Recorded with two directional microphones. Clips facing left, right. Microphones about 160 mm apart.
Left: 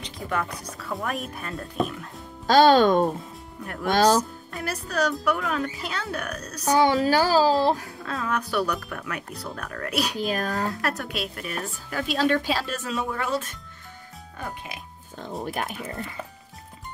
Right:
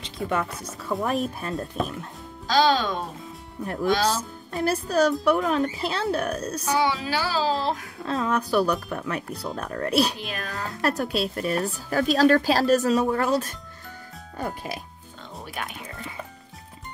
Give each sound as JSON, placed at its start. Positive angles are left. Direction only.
{"t": 0.3, "sound": "a woman's voice", "side_deg": -25}
{"t": 2.4, "sound": "speech", "side_deg": 50}
{"t": 4.5, "sound": "a woman's voice", "side_deg": -30}
{"t": 6.6, "sound": "a woman's voice", "side_deg": 40}
{"t": 8.0, "sound": "a woman's voice", "side_deg": -25}
{"t": 10.1, "sound": "a woman's voice", "side_deg": 40}
{"t": 10.7, "sound": "speech", "side_deg": -30}
{"t": 15.4, "sound": "speech", "side_deg": 45}